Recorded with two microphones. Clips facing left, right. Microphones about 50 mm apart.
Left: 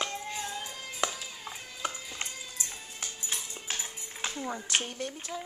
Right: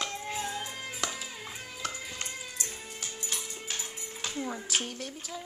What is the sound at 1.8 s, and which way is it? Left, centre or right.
Music, centre.